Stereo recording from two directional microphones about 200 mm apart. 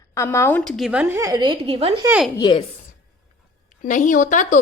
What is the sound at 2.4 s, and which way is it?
Speech, 20° left (ahead or behind).